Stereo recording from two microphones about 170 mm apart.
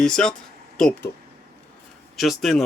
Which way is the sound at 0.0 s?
5° left (ahead or behind).